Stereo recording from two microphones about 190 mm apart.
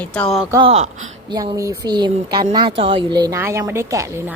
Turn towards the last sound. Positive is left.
turn(degrees=-15)  # may be behind; listen again after turning